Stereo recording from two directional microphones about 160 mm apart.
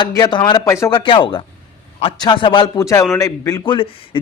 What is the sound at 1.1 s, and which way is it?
A man's voice, 30° left (ahead or behind).